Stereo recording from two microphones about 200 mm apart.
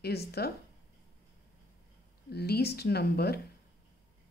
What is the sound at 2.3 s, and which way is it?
A woman's voice, 55° left (ahead or behind).